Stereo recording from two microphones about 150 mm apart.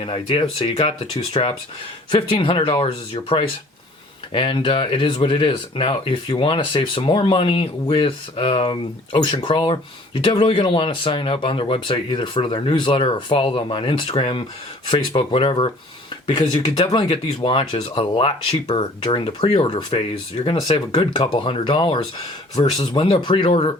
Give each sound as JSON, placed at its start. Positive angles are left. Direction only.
{"t": 0.0, "sound": "speech", "side_deg": 35}